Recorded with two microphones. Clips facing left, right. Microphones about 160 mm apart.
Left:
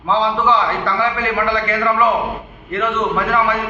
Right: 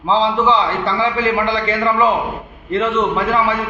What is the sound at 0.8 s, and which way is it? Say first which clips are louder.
A man's voice: right 2 dB; 30° right (ahead or behind).